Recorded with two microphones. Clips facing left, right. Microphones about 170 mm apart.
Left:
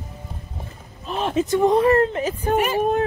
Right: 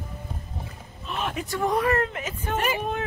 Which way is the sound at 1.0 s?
30° left (ahead or behind).